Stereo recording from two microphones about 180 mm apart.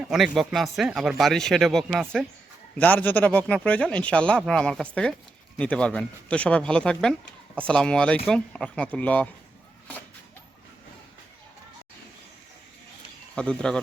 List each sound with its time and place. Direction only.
0.0 s speech: centre (ahead or behind)
13.3 s speech: 5° left (ahead or behind)